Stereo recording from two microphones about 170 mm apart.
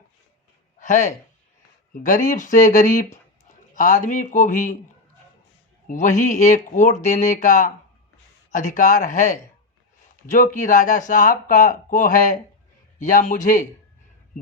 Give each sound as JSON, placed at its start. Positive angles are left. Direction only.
{"t": 0.8, "sound": "speech", "side_deg": 45}
{"t": 5.9, "sound": "speech", "side_deg": 50}
{"t": 10.3, "sound": "speech", "side_deg": 50}